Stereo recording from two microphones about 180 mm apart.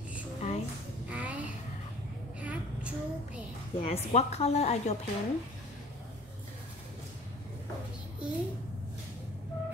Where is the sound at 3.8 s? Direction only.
35° left (ahead or behind).